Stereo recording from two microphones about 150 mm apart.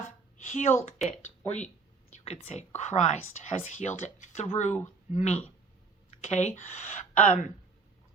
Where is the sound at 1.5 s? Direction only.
50° left (ahead or behind).